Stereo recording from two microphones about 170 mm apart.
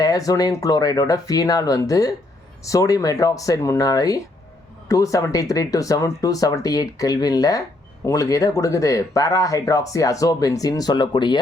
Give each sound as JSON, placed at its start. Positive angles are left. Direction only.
{"t": 0.0, "sound": "speech", "side_deg": 20}